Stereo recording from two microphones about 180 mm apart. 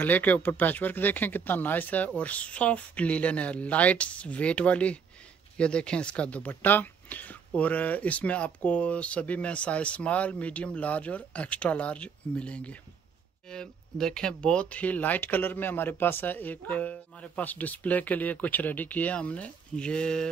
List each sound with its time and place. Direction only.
0.0 s speech: 10° left (ahead or behind)